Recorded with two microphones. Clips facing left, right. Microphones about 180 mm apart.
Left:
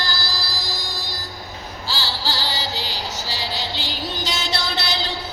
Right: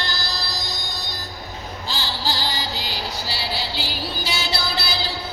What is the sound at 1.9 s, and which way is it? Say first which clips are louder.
Music: even; 15° right (ahead or behind).